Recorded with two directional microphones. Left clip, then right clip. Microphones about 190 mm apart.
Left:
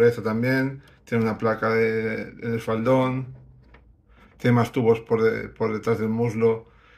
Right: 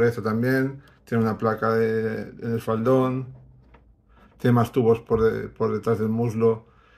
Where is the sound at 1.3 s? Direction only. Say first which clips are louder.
Even; 45° right (ahead or behind).